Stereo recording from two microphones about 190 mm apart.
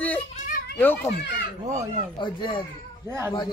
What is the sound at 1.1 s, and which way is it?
Speech, 65° left (ahead or behind).